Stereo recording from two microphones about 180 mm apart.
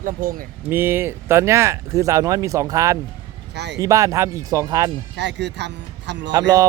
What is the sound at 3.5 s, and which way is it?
Speech, 70° right (ahead or behind).